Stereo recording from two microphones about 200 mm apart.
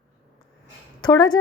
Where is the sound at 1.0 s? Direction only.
20° left (ahead or behind).